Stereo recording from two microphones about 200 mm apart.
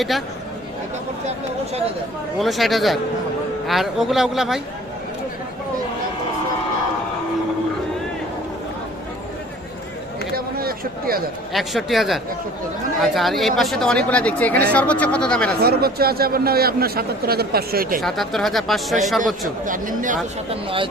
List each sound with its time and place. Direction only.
2.4 s speech: centre (ahead or behind)
10.3 s a sound: 50° right (ahead or behind)
11.5 s speech: centre (ahead or behind)
15.6 s a man's voice: 50° right (ahead or behind)
18.0 s speech: centre (ahead or behind)
19.6 s speech: 40° right (ahead or behind)
20.5 s speech: 25° right (ahead or behind)